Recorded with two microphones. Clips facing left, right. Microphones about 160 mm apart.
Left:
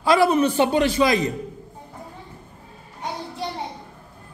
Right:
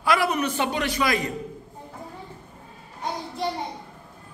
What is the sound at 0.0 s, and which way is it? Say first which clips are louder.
A man's voice: left 6 dB; 30° left (ahead or behind).